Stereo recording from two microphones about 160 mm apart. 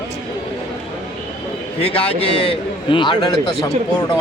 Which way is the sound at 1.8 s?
40° left (ahead or behind).